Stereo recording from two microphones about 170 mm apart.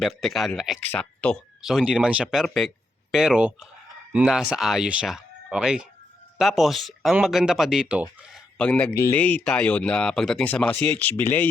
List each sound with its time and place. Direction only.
0.0 s speech: centre (ahead or behind)
8.3 s speech: 5° left (ahead or behind)